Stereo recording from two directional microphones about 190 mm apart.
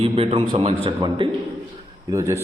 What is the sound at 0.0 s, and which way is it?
Speech, 30° right (ahead or behind).